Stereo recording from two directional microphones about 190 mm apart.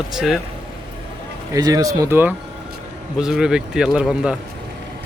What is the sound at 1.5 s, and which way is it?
Speech, 20° right (ahead or behind).